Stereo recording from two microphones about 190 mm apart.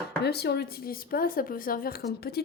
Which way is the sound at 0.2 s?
60° left (ahead or behind).